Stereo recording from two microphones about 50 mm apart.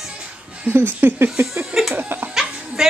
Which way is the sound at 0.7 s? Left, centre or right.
Right.